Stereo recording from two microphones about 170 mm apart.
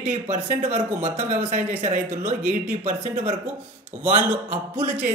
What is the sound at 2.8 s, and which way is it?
Speech, 55° right (ahead or behind).